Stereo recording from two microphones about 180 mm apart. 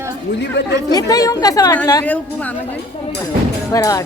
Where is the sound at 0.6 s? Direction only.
75° left (ahead or behind).